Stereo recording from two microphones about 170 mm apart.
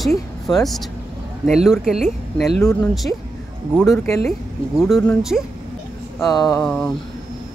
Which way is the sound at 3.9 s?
15° left (ahead or behind).